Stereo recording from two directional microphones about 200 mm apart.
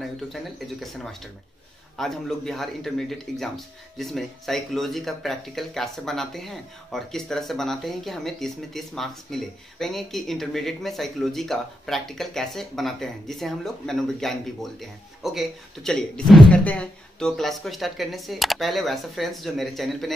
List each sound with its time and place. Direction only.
0.0 s speech: centre (ahead or behind)